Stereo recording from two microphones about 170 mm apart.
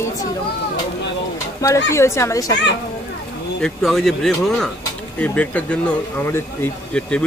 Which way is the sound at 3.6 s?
Centre (ahead or behind).